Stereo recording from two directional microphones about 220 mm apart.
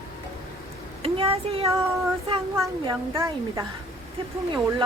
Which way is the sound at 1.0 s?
25° right (ahead or behind).